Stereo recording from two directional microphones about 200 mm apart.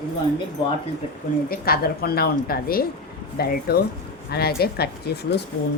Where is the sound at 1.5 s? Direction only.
50° left (ahead or behind).